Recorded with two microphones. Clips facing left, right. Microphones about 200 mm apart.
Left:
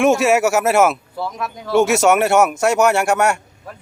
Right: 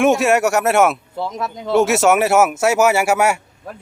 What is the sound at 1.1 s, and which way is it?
Speech, 20° right (ahead or behind).